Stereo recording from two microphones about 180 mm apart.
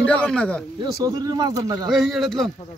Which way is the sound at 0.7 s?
20° right (ahead or behind).